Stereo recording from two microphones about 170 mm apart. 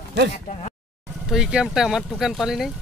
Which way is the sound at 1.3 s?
5° right (ahead or behind).